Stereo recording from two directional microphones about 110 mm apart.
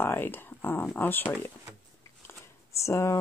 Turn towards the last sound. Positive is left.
turn(degrees=25)  # may be behind; listen again after turning